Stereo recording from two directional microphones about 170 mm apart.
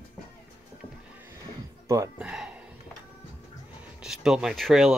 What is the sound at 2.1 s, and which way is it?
Speech, 5° right (ahead or behind).